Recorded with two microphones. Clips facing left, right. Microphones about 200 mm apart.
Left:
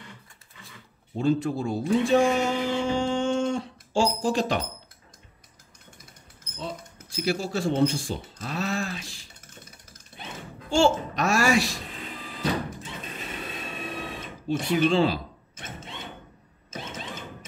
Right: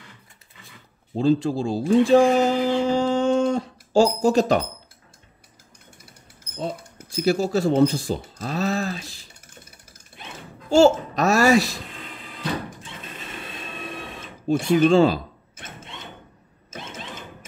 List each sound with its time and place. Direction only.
1.1 s speech: 30° right (ahead or behind)
7.2 s speech: 40° right (ahead or behind)
10.7 s speech: 40° right (ahead or behind)
14.5 s speech: 45° right (ahead or behind)